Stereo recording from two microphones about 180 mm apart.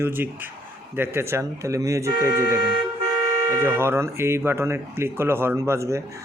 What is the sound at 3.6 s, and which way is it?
Speech, 15° right (ahead or behind).